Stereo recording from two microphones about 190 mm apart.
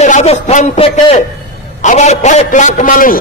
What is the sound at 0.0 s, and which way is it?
A man's voice, 35° left (ahead or behind).